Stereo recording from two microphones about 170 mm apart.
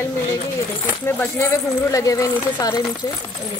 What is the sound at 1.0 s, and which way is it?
A woman's voice, 15° left (ahead or behind).